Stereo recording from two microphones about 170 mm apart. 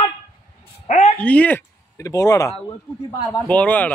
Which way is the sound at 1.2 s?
10° left (ahead or behind).